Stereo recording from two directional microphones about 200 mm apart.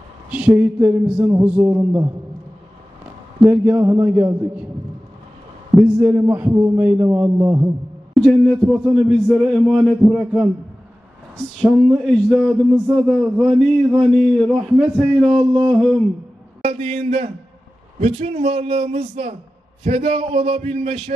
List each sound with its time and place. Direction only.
0.3 s a man's voice: 10° right (ahead or behind)
3.4 s a man's voice: 10° right (ahead or behind)
5.8 s a man's voice: 10° right (ahead or behind)
8.9 s a man's voice: centre (ahead or behind)
11.6 s a man's voice: centre (ahead or behind)
16.6 s a man's voice: 30° right (ahead or behind)